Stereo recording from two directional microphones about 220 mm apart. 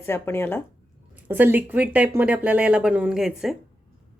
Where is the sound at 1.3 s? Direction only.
10° right (ahead or behind).